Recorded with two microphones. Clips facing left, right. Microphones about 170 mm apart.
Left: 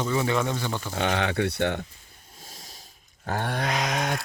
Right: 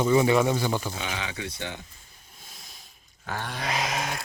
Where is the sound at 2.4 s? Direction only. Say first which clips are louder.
Left 4 dB; 40° left (ahead or behind).